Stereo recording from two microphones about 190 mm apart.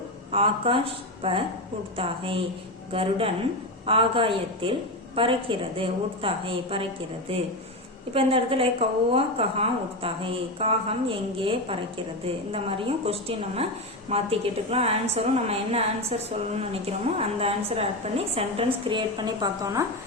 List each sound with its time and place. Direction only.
0.3 s a woman's voice: 30° right (ahead or behind)